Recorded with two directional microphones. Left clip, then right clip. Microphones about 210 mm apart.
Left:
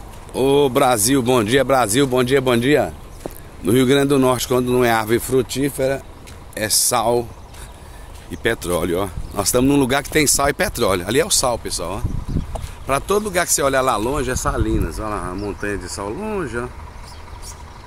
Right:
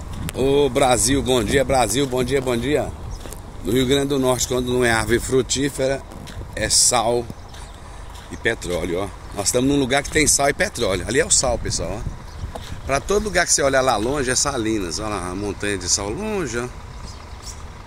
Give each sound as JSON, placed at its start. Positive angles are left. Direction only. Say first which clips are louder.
{"t": 0.4, "sound": "speech", "louder": "left 2 dB", "side_deg": 20}
{"t": 4.7, "sound": "speech", "louder": "even", "side_deg": 15}
{"t": 5.2, "sound": "speech", "louder": "left 1 dB", "side_deg": 5}
{"t": 8.4, "sound": "speech", "louder": "left 2 dB", "side_deg": 25}
{"t": 13.1, "sound": "speech", "louder": "right 1 dB", "side_deg": 10}
{"t": 14.5, "sound": "speech", "louder": "even", "side_deg": -5}